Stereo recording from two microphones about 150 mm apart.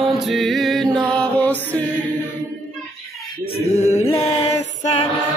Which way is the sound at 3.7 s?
50° left (ahead or behind).